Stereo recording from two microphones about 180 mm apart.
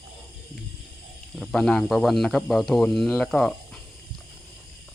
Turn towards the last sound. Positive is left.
turn(degrees=0)  # may be behind; listen again after turning